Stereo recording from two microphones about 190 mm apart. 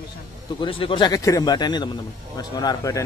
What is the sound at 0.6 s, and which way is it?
A man's voice, 25° left (ahead or behind).